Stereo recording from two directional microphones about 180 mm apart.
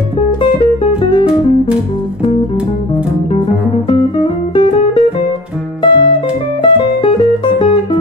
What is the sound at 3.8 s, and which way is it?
Guitar, 30° left (ahead or behind).